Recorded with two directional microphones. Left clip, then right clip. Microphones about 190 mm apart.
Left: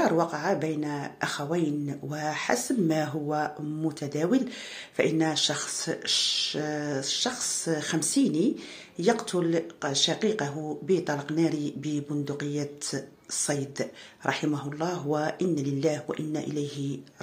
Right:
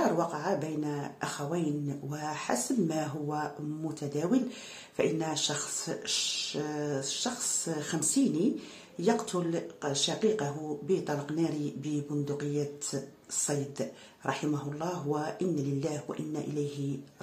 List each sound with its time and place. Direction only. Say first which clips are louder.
0.0 s speech: left 4 dB; 15° left (ahead or behind)